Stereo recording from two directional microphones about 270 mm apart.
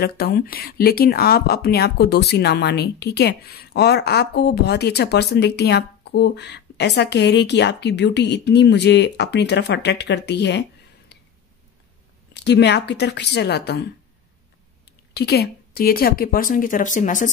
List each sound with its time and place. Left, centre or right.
0.0 s speech: left
12.4 s speech: left
15.1 s speech: left